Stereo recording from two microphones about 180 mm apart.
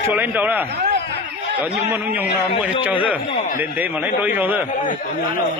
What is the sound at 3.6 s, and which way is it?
A man's voice, 10° right (ahead or behind).